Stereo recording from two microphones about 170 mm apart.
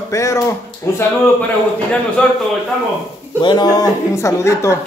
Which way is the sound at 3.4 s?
25° left (ahead or behind).